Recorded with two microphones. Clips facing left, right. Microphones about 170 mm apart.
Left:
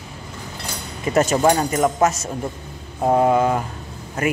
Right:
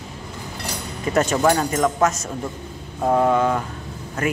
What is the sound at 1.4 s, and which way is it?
A man's voice, 20° left (ahead or behind).